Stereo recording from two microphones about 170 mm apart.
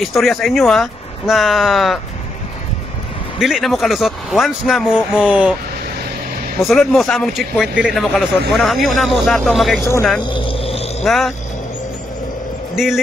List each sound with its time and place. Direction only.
0.0 s speech: centre (ahead or behind)
3.3 s speech: 5° right (ahead or behind)
6.6 s speech: centre (ahead or behind)
10.3 s a sound: 30° left (ahead or behind)
11.1 s speech: centre (ahead or behind)
12.7 s a man's voice: centre (ahead or behind)